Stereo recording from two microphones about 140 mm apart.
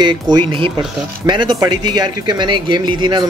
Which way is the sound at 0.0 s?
35° right (ahead or behind).